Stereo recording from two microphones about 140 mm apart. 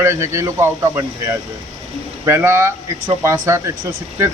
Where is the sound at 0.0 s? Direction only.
20° right (ahead or behind).